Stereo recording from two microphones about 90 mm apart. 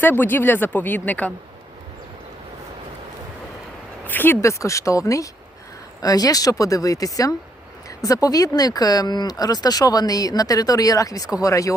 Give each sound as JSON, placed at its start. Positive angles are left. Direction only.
{"t": 0.0, "sound": "speech", "side_deg": 20}
{"t": 4.0, "sound": "a sound", "side_deg": 20}
{"t": 4.4, "sound": "speech", "side_deg": 35}